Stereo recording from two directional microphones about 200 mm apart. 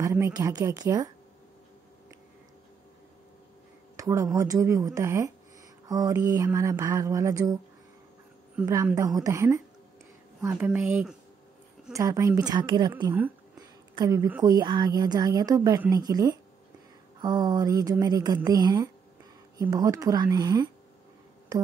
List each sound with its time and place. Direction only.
0.0 s speech: 15° right (ahead or behind)
3.9 s a sound: 15° right (ahead or behind)
4.4 s speech: 15° right (ahead or behind)
8.8 s a woman's voice: 15° right (ahead or behind)